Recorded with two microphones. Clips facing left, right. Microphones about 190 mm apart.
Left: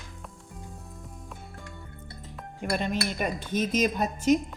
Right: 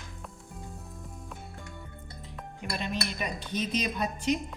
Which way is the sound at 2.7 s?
50° left (ahead or behind).